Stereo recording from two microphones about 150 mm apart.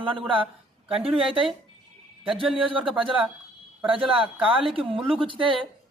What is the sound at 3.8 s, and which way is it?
Speech, 35° right (ahead or behind).